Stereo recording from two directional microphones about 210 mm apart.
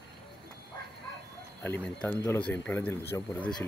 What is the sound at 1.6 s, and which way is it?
Speech, 5° left (ahead or behind).